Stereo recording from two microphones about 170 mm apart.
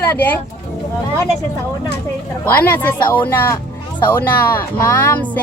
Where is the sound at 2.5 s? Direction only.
10° left (ahead or behind).